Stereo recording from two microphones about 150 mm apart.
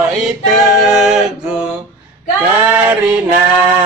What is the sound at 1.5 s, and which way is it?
Mantra, 5° right (ahead or behind).